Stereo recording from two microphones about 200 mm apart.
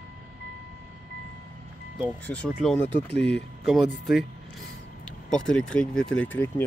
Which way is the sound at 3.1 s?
60° left (ahead or behind).